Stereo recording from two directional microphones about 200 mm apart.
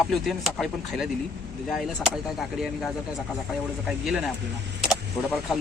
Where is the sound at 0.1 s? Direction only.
Centre (ahead or behind).